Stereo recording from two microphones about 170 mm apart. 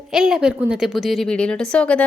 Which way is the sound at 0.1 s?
5° right (ahead or behind).